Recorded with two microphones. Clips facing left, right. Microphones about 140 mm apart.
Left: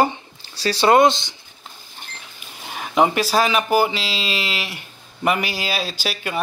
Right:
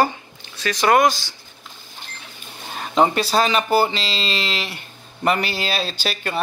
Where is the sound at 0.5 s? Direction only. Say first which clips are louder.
Left 2 dB; 30° left (ahead or behind).